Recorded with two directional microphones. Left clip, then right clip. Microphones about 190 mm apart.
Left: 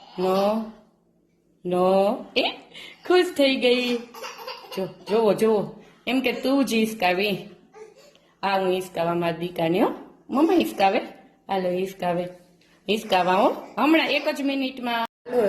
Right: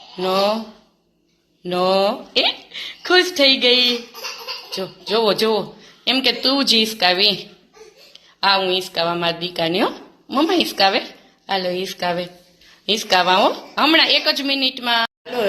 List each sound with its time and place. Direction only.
0.2 s a woman's voice: centre (ahead or behind)
1.7 s speech: 5° left (ahead or behind)
5.1 s a woman's voice: centre (ahead or behind)
8.4 s a woman's voice: centre (ahead or behind)